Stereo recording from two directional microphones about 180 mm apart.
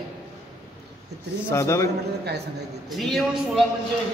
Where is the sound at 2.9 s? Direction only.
Centre (ahead or behind).